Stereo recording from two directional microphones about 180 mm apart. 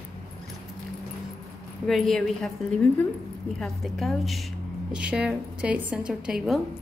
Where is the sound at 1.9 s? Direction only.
Centre (ahead or behind).